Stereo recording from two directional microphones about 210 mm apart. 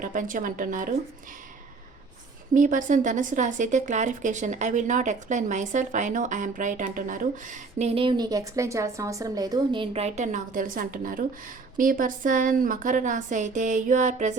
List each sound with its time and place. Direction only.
0.0 s a woman's voice: 40° right (ahead or behind)
2.6 s a woman's voice: 40° right (ahead or behind)